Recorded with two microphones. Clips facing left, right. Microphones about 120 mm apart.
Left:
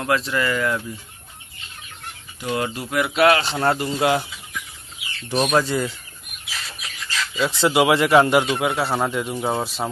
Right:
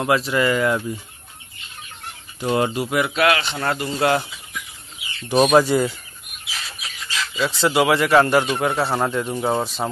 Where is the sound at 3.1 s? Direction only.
30° left (ahead or behind).